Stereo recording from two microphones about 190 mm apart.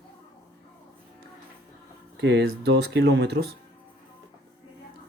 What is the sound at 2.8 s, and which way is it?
Speech, 60° right (ahead or behind).